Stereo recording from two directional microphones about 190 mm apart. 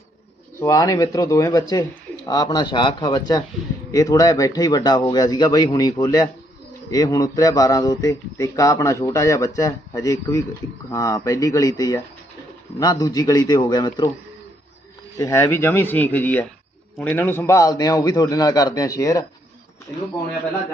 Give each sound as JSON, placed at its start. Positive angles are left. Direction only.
{"t": 0.6, "sound": "a man's voice", "side_deg": 20}
{"t": 15.2, "sound": "speech", "side_deg": 15}